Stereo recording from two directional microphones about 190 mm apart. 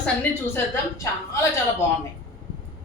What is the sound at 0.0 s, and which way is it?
A woman's voice, 10° left (ahead or behind).